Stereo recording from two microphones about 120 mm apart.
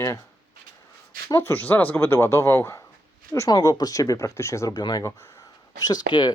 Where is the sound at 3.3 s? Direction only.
30° left (ahead or behind).